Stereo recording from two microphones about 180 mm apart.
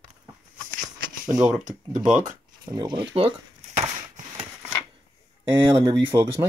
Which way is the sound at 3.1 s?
35° right (ahead or behind).